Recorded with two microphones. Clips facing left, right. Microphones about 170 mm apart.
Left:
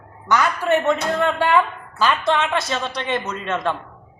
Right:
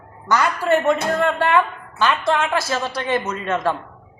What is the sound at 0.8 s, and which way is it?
Speech, 25° right (ahead or behind).